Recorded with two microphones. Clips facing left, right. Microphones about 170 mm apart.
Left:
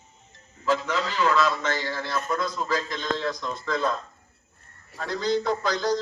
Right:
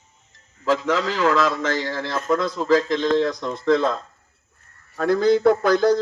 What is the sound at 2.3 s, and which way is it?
A man's voice, 65° right (ahead or behind).